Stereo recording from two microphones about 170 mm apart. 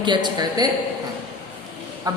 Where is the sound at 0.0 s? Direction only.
25° right (ahead or behind).